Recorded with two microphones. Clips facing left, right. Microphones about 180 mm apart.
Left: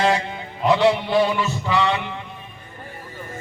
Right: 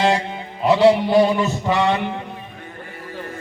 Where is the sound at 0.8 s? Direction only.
35° right (ahead or behind).